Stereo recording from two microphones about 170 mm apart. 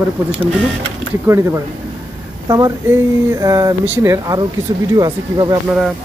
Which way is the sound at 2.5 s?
20° right (ahead or behind).